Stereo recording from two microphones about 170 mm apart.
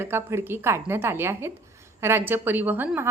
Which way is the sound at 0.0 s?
15° right (ahead or behind).